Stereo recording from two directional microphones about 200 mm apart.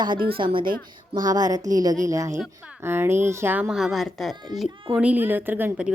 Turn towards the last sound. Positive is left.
turn(degrees=-5)  # may be behind; listen again after turning